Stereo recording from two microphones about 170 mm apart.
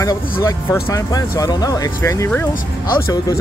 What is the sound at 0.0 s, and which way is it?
Speech, 20° left (ahead or behind).